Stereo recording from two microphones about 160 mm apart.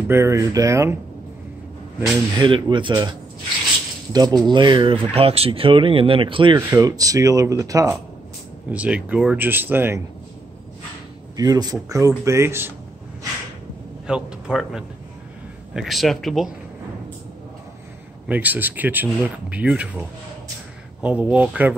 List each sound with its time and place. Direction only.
0.1 s speech: 15° right (ahead or behind)
2.3 s speech: 30° right (ahead or behind)
8.6 s speech: 10° right (ahead or behind)
11.3 s speech: 25° right (ahead or behind)
14.0 s a man's voice: 5° right (ahead or behind)
18.3 s speech: 10° right (ahead or behind)